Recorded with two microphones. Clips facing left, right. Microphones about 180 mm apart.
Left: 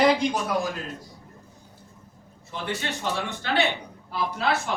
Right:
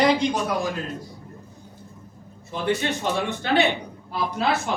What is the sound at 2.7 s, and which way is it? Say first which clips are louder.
Speech: right 6 dB; 20° right (ahead or behind).